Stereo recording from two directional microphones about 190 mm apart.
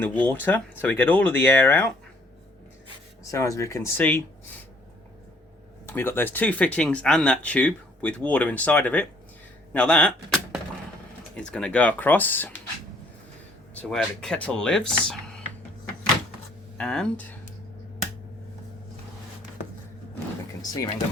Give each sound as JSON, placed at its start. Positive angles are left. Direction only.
{"t": 0.0, "sound": "speech", "side_deg": 10}
{"t": 3.3, "sound": "speech", "side_deg": 15}
{"t": 5.8, "sound": "speech", "side_deg": 10}
{"t": 13.9, "sound": "speech", "side_deg": 5}
{"t": 16.7, "sound": "speech", "side_deg": 5}
{"t": 20.6, "sound": "speech", "side_deg": 20}